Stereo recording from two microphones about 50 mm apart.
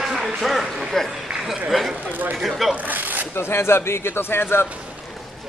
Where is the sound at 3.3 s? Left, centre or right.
Left.